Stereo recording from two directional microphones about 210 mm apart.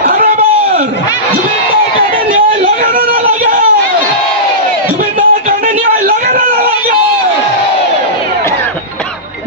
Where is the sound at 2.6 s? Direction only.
45° right (ahead or behind).